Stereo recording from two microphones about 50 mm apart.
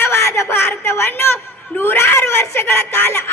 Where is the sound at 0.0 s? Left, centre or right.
Left.